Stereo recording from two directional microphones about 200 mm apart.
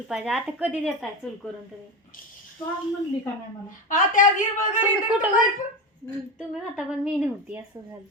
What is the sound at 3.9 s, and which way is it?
Speech, 40° left (ahead or behind).